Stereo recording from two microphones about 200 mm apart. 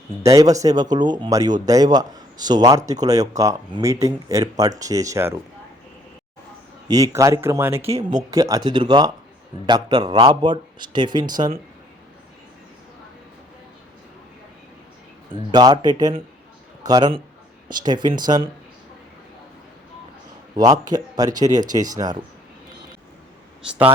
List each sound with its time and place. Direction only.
0.2 s a man's voice: 15° right (ahead or behind)
6.8 s speech: 20° right (ahead or behind)
7.8 s speech: 30° right (ahead or behind)
8.3 s a man's voice: 15° right (ahead or behind)
15.3 s a man's voice: 20° right (ahead or behind)
20.6 s a man's voice: 20° right (ahead or behind)